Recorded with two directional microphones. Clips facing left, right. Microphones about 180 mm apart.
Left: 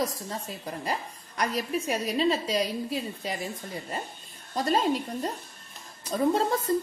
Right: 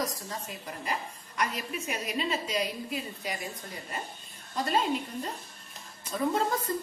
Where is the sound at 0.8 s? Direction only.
35° left (ahead or behind).